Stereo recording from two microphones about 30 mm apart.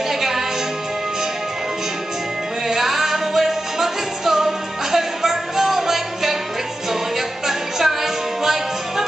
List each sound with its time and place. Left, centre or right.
0.1 s music: centre
2.7 s music: centre